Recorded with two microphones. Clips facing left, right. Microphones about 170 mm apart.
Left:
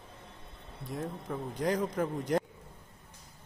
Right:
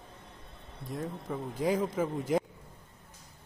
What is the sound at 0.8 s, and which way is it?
Speech, centre (ahead or behind).